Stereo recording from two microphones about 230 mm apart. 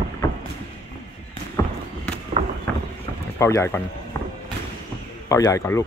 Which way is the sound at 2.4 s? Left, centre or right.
Right.